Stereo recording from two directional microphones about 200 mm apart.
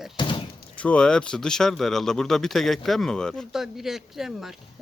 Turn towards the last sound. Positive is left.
turn(degrees=0)  # may be behind; listen again after turning